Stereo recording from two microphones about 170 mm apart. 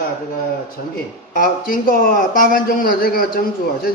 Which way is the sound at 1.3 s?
55° left (ahead or behind).